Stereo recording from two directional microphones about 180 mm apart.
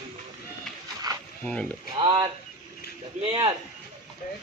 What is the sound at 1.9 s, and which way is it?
Speech, 25° right (ahead or behind).